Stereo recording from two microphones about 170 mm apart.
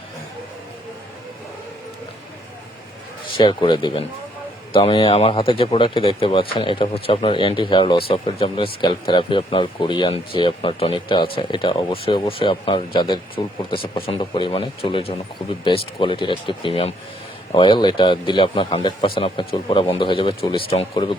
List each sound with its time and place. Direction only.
3.3 s speech: 30° left (ahead or behind)